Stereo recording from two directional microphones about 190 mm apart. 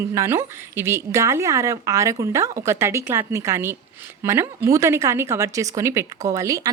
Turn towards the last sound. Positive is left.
turn(degrees=-15)  # may be behind; listen again after turning